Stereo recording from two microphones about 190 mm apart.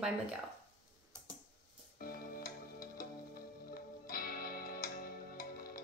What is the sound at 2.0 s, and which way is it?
Music, 50° left (ahead or behind).